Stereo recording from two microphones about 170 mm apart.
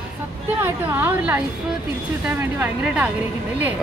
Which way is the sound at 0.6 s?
10° right (ahead or behind).